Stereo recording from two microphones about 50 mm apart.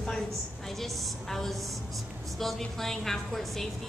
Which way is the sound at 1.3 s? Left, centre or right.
Centre.